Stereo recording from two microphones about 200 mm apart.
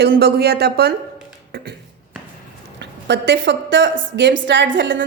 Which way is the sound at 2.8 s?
60° right (ahead or behind).